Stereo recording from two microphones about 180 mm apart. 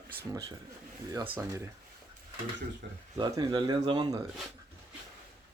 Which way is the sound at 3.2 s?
25° right (ahead or behind).